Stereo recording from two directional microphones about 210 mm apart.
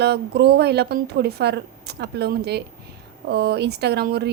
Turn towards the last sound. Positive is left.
turn(degrees=-50)  # may be behind; listen again after turning